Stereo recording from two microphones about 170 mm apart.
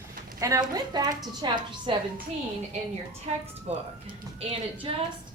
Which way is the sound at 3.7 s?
40° right (ahead or behind).